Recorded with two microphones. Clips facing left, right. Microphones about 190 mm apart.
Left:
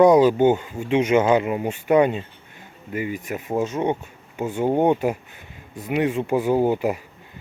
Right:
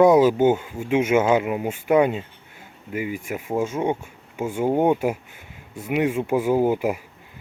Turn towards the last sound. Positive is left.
turn(degrees=-10)  # may be behind; listen again after turning